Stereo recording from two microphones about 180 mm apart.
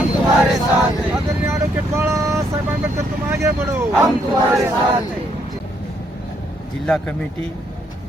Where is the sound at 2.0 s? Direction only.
15° right (ahead or behind).